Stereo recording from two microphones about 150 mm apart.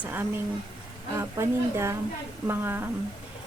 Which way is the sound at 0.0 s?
15° right (ahead or behind).